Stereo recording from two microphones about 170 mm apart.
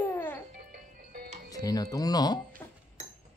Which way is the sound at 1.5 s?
20° left (ahead or behind).